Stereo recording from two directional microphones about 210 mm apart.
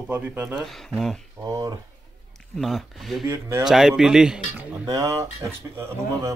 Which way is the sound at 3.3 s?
10° right (ahead or behind).